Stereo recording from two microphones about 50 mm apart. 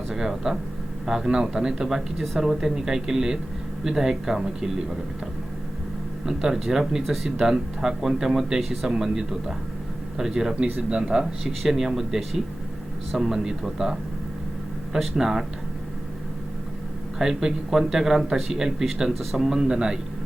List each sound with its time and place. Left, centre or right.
0.1 s speech: centre
6.2 s speech: centre
14.9 s speech: centre
17.2 s speech: centre